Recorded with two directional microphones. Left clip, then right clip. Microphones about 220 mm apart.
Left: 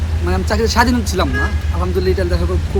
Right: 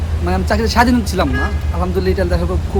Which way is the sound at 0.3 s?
10° right (ahead or behind).